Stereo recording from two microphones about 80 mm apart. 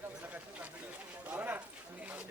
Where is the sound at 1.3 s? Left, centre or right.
Right.